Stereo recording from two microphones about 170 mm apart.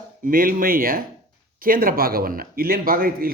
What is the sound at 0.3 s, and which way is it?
Speech, 55° right (ahead or behind).